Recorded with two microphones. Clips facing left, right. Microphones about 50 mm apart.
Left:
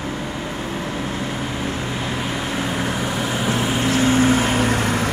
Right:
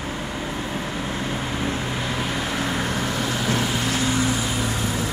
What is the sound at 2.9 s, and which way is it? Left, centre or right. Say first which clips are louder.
Vehicle: left 2 dB; left.